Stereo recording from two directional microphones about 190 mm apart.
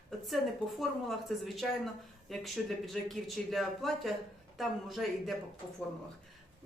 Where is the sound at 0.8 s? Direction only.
Centre (ahead or behind).